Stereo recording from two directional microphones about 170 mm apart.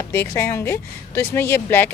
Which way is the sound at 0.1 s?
15° left (ahead or behind).